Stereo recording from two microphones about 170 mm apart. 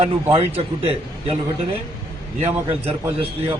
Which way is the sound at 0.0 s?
35° right (ahead or behind).